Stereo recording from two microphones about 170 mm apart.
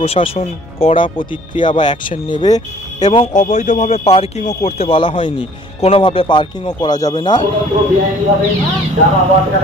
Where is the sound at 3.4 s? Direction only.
45° left (ahead or behind); by 7.4 s 25° left (ahead or behind).